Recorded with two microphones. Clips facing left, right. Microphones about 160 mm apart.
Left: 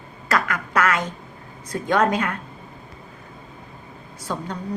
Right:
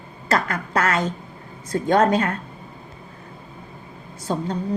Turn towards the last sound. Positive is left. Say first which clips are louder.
# right 4 dB
turn(degrees=-30)  # may be behind; listen again after turning